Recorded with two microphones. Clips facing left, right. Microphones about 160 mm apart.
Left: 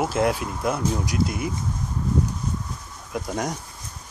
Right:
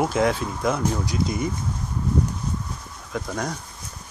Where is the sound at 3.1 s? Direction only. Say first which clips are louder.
Left 1 dB; 15° left (ahead or behind).